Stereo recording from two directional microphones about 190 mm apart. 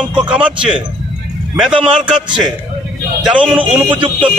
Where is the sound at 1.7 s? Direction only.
25° right (ahead or behind).